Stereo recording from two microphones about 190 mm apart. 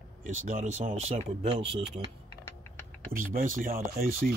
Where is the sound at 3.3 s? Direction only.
45° right (ahead or behind).